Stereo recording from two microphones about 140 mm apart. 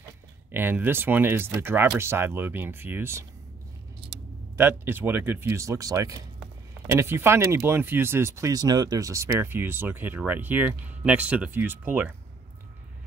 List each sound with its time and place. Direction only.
0.5 s speech: 15° right (ahead or behind)
4.6 s speech: 15° right (ahead or behind)